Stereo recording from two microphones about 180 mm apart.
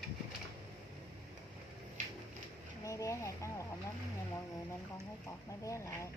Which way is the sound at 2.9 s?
15° left (ahead or behind).